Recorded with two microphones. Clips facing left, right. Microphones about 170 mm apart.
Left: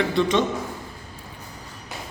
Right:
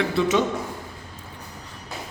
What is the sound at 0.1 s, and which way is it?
Speech, 5° right (ahead or behind).